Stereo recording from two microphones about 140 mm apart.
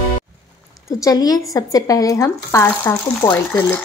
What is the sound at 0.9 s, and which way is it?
Speech, 25° left (ahead or behind).